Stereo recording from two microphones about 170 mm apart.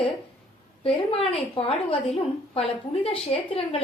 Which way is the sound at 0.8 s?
35° left (ahead or behind).